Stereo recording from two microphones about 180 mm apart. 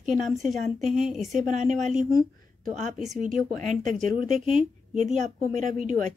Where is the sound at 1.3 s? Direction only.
45° right (ahead or behind).